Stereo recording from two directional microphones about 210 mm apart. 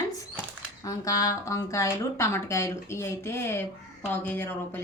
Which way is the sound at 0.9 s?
15° left (ahead or behind).